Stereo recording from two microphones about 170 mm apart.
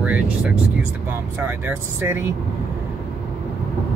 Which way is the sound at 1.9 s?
10° right (ahead or behind).